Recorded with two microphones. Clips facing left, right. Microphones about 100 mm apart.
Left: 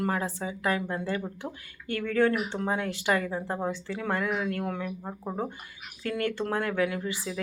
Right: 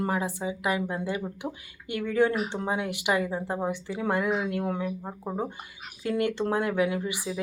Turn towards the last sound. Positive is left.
turn(degrees=-15)  # may be behind; listen again after turning